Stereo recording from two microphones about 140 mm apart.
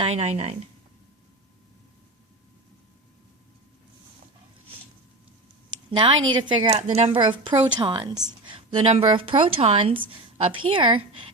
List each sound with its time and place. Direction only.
0.0 s speech: 50° right (ahead or behind)
6.0 s a woman's voice: 35° right (ahead or behind)
6.7 s speech: 50° right (ahead or behind)
7.2 s a woman's voice: 35° right (ahead or behind)